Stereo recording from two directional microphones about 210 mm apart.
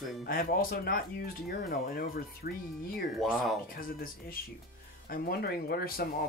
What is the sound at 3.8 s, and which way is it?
Speech, 45° left (ahead or behind).